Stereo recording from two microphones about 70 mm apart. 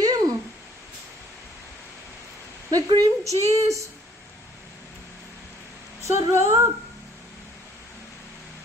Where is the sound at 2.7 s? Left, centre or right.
Right.